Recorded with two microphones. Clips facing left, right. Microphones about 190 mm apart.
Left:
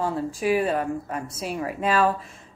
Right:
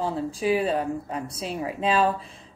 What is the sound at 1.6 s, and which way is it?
Speech, 20° right (ahead or behind).